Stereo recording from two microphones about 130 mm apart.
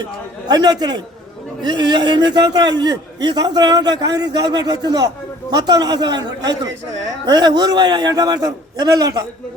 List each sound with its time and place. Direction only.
0.4 s a man's voice: 30° right (ahead or behind)